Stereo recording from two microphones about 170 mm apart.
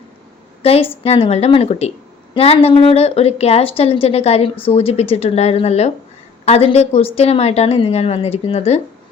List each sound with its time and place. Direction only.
0.6 s a woman's voice: 35° left (ahead or behind)